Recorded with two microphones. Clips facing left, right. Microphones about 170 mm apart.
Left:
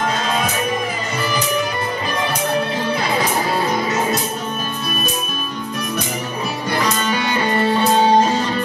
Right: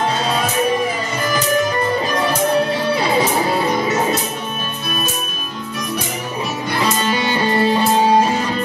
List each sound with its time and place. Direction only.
7.6 s music: 10° right (ahead or behind)